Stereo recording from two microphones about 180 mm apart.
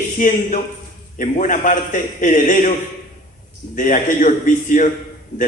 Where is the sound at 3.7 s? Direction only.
45° left (ahead or behind).